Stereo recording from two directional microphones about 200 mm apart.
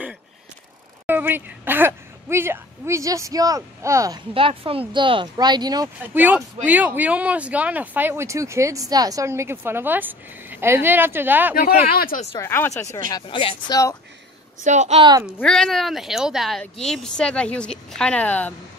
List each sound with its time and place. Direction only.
1.0 s speech: 10° right (ahead or behind)
4.3 s speech: 25° right (ahead or behind)
6.1 s speech: 10° right (ahead or behind)
11.8 s speech: 45° left (ahead or behind)
12.4 s speech: 15° left (ahead or behind)
13.1 s speech: 25° left (ahead or behind)
14.6 s a woman's voice: 35° right (ahead or behind)
15.2 s speech: 5° left (ahead or behind)